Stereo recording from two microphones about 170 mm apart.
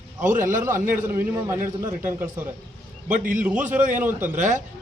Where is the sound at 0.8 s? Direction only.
15° right (ahead or behind).